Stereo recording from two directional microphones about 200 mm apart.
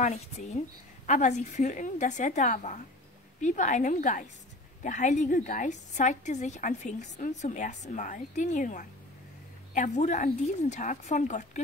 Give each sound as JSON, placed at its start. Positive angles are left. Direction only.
{"t": 0.0, "sound": "a woman's voice", "side_deg": 35}